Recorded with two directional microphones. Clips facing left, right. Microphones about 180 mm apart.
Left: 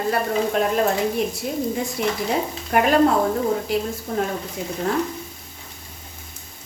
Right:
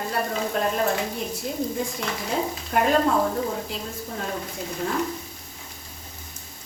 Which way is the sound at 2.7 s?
70° left (ahead or behind).